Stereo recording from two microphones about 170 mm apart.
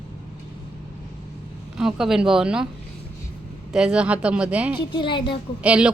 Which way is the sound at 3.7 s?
5° right (ahead or behind).